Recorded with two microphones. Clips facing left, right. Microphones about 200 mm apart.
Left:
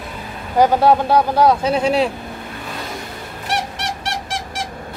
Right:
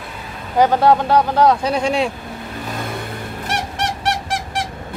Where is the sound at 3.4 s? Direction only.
55° right (ahead or behind).